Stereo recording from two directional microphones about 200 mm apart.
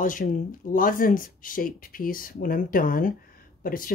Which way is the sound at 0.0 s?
45° left (ahead or behind).